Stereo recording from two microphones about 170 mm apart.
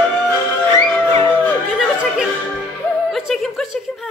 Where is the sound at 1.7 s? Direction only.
5° right (ahead or behind).